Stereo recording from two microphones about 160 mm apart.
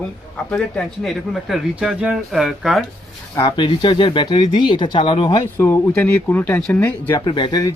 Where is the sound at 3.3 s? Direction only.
30° left (ahead or behind).